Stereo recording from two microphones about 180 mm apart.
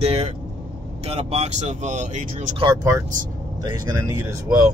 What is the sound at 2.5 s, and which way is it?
Speech, 20° right (ahead or behind).